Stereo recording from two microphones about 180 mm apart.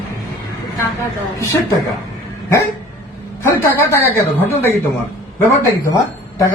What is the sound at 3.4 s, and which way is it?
A woman's voice, 15° left (ahead or behind).